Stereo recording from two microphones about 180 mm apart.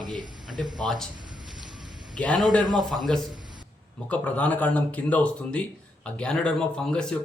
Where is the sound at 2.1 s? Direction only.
5° left (ahead or behind).